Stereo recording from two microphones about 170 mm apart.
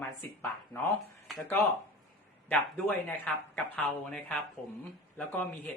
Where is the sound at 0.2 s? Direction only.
10° left (ahead or behind).